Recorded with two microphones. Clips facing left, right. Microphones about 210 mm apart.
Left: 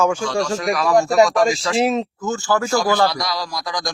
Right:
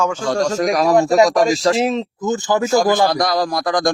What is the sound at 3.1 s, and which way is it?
Speech, 50° right (ahead or behind).